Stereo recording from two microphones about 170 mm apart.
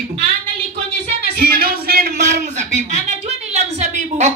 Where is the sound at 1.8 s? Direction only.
65° right (ahead or behind).